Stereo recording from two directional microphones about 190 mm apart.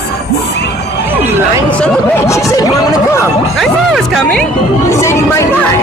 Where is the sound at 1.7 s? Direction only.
5° left (ahead or behind).